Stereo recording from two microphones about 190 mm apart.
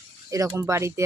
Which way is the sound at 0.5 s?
15° right (ahead or behind).